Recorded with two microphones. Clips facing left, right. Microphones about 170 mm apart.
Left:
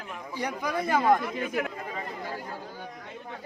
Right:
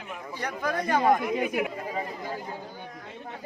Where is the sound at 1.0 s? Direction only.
15° right (ahead or behind).